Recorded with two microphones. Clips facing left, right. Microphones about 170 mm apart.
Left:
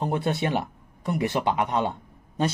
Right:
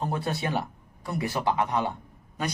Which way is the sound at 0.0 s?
20° left (ahead or behind).